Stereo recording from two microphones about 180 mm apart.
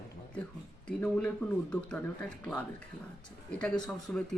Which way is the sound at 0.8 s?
5° left (ahead or behind).